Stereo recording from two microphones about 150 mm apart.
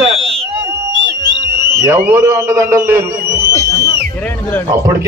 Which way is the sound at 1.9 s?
20° right (ahead or behind).